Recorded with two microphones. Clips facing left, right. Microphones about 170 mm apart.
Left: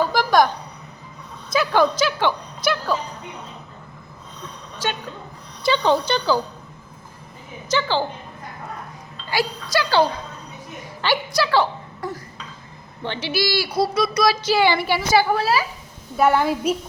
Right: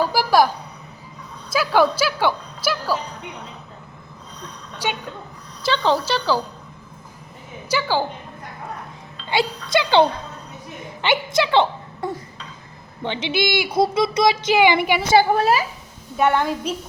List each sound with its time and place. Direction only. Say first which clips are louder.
0.0 s a sound: even; 5° right (ahead or behind)
1.5 s a woman's voice: right 1 dB; 10° right (ahead or behind)
4.8 s a woman's voice: right 1 dB; 15° right (ahead or behind)
5.6 s a woman's voice: left 1 dB; centre (ahead or behind)
7.7 s a woman's voice: even; 10° right (ahead or behind)
9.3 s a woman's voice: right 2 dB; 25° right (ahead or behind)
16.1 s a woman's voice: left 1 dB; 5° left (ahead or behind)